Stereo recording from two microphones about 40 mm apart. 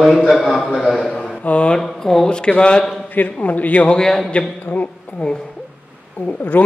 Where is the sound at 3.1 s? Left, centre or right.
Left.